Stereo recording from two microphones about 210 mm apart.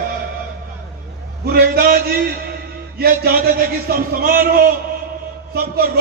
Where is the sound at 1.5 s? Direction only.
45° right (ahead or behind).